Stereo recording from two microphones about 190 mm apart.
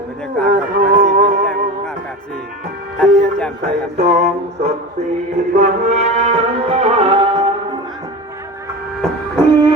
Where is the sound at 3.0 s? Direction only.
5° left (ahead or behind).